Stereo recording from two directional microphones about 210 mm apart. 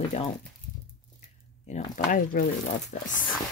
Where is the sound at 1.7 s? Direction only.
35° left (ahead or behind).